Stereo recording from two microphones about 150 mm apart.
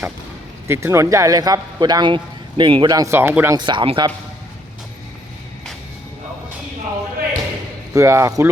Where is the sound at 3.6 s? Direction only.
30° right (ahead or behind).